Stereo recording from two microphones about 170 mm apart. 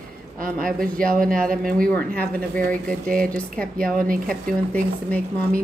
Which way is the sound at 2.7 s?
55° right (ahead or behind).